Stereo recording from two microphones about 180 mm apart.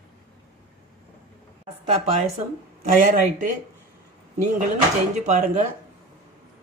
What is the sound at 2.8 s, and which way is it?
Speech, 45° right (ahead or behind).